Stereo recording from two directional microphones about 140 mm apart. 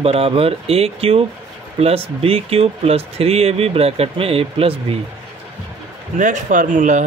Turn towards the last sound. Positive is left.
turn(degrees=-60)  # may be behind; listen again after turning